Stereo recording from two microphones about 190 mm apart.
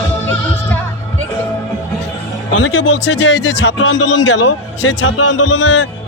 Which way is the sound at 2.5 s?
80° left.